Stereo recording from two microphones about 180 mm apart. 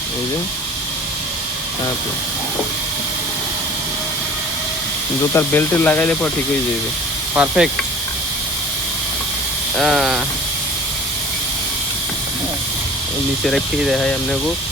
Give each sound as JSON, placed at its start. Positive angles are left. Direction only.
{"t": 5.3, "sound": "speech", "side_deg": 10}
{"t": 7.3, "sound": "sizzle", "side_deg": -5}
{"t": 9.7, "sound": "speech", "side_deg": 0}
{"t": 13.4, "sound": "speech", "side_deg": 0}